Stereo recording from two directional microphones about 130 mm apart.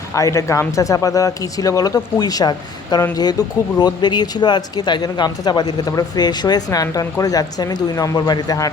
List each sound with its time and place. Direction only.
0.1 s speech: 25° left (ahead or behind)